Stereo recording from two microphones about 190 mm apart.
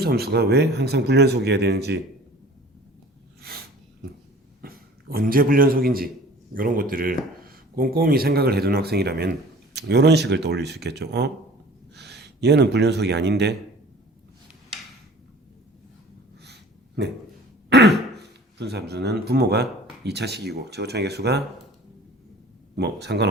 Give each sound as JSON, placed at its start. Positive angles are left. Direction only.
{"t": 0.0, "sound": "speech", "side_deg": -55}
{"t": 4.6, "sound": "a man's voice", "side_deg": -50}
{"t": 16.4, "sound": "a sound", "side_deg": -60}
{"t": 17.7, "sound": "throat clearing", "side_deg": -60}
{"t": 18.5, "sound": "speech", "side_deg": -60}
{"t": 22.7, "sound": "speech", "side_deg": -65}